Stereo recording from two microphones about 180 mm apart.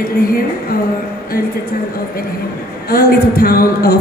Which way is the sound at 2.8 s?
55° left (ahead or behind).